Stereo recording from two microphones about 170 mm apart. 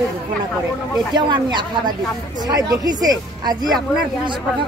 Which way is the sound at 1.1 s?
25° right (ahead or behind).